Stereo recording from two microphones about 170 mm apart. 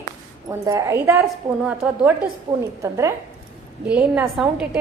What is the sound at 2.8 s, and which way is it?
Speech, 15° right (ahead or behind).